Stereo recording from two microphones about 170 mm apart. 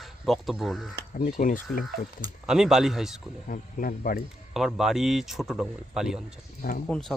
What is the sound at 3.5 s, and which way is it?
Speech, 55° left (ahead or behind).